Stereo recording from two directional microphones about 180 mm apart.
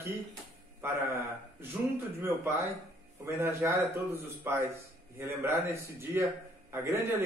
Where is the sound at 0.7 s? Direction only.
15° right (ahead or behind).